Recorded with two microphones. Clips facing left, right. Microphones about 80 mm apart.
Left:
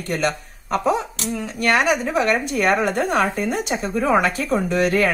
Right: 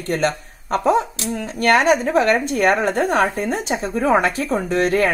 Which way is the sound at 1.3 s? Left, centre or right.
Right.